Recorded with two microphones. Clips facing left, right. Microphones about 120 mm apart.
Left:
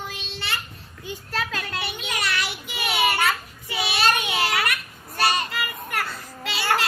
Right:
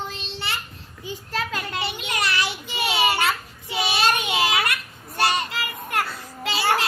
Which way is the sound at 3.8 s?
20° right (ahead or behind).